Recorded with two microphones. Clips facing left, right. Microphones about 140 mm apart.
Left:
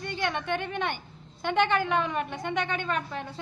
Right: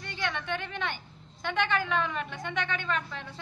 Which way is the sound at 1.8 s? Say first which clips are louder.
Left 3 dB; 50° left (ahead or behind).